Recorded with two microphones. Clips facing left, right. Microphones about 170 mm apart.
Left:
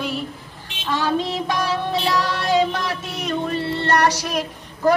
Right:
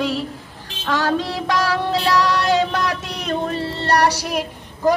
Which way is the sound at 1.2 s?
20° left (ahead or behind).